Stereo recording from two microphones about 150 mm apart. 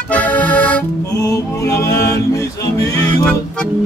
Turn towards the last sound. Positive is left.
turn(degrees=25)  # may be behind; listen again after turning